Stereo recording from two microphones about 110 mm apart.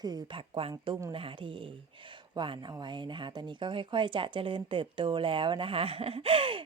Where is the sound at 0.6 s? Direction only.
50° right (ahead or behind).